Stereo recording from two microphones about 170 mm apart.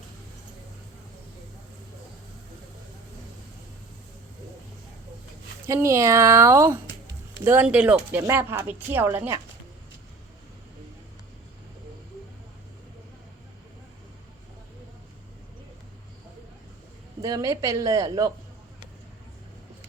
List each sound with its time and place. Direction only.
5.6 s speech: 15° right (ahead or behind)
17.2 s a woman's voice: 20° right (ahead or behind)